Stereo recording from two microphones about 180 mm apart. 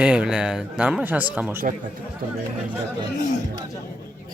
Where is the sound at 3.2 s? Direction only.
50° left (ahead or behind).